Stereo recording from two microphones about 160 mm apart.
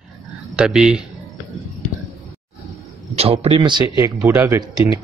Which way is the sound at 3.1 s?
40° right (ahead or behind).